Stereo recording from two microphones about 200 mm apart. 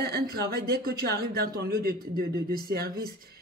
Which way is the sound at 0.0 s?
50° right (ahead or behind).